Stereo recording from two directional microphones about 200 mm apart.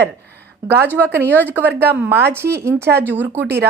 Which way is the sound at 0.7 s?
10° right (ahead or behind).